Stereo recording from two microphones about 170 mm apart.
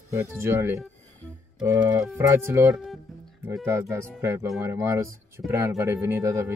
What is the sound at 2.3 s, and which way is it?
Speech, 15° right (ahead or behind).